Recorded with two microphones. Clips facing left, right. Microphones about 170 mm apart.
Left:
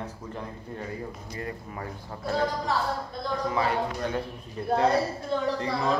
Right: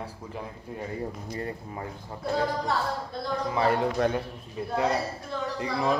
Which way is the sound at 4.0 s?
90° right.